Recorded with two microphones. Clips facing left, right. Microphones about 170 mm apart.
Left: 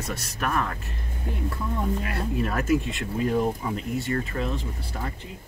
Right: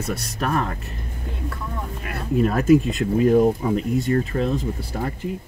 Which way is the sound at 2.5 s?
40° right (ahead or behind).